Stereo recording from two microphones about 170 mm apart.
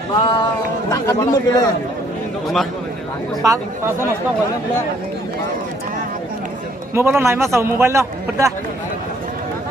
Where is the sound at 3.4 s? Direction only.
15° right (ahead or behind).